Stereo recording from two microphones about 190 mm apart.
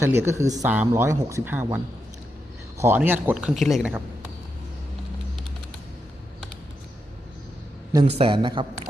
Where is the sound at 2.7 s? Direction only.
10° right (ahead or behind).